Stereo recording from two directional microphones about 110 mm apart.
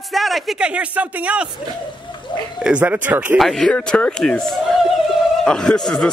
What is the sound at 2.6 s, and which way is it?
Speech, 15° right (ahead or behind).